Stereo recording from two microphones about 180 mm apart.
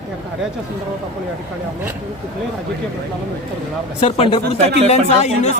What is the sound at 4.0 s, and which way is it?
Speech, 35° left (ahead or behind).